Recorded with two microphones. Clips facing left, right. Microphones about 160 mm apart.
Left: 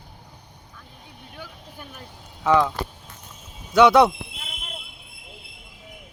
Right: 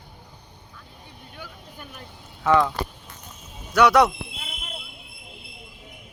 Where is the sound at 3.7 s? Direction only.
25° left (ahead or behind).